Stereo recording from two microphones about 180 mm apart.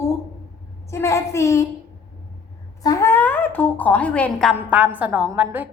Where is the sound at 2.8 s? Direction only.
20° left (ahead or behind); by 5.6 s 10° right (ahead or behind).